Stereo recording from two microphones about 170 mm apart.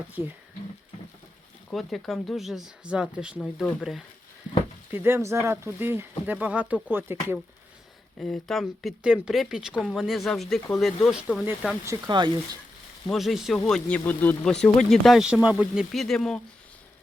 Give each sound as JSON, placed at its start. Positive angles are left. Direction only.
{"t": 0.2, "sound": "speech", "side_deg": 35}
{"t": 1.7, "sound": "speech", "side_deg": 0}
{"t": 4.9, "sound": "speech", "side_deg": -15}
{"t": 8.2, "sound": "speech", "side_deg": 0}
{"t": 11.9, "sound": "speech", "side_deg": -25}
{"t": 13.1, "sound": "speech", "side_deg": 0}